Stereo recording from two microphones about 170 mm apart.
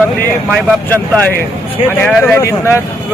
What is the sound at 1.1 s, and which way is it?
Speech, 10° left (ahead or behind).